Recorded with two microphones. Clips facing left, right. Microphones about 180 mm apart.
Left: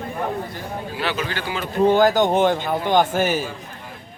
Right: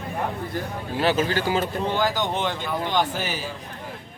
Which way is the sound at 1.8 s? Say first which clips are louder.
Left 8 dB; 50° left (ahead or behind).